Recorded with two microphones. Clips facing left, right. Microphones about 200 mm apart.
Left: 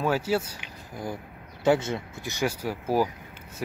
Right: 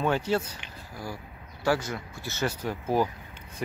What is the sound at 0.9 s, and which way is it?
Speech, 20° left (ahead or behind).